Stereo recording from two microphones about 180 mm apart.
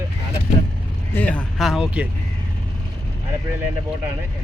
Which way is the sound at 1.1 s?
10° left (ahead or behind).